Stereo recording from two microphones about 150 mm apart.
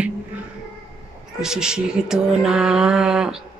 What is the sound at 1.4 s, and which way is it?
Speech, 5° right (ahead or behind).